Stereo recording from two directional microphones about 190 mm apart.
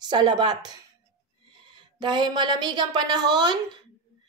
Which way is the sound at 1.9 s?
25° right (ahead or behind).